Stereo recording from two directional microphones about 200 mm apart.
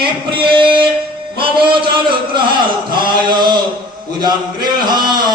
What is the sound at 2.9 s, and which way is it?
A man's voice, 25° right (ahead or behind).